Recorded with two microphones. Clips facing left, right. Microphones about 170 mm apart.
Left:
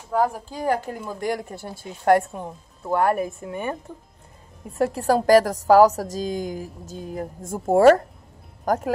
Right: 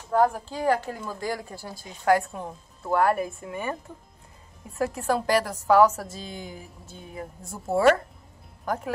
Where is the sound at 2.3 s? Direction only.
Centre (ahead or behind).